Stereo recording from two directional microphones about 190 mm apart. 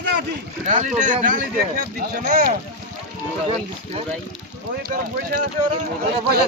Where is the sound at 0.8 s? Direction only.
40° right (ahead or behind).